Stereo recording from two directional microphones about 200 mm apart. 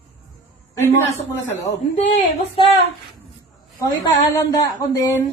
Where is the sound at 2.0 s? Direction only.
35° left (ahead or behind).